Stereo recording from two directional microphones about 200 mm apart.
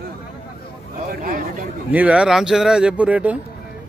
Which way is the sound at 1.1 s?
45° right (ahead or behind).